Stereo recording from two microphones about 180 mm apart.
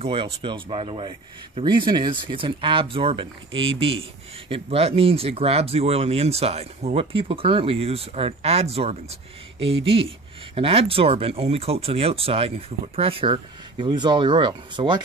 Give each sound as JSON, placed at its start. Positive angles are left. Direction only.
{"t": 0.0, "sound": "speech", "side_deg": -30}